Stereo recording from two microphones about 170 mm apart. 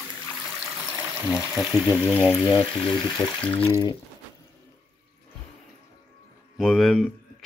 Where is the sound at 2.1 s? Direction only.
15° left (ahead or behind).